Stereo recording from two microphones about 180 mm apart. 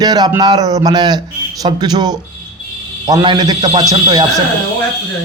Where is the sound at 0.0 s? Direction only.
20° right (ahead or behind).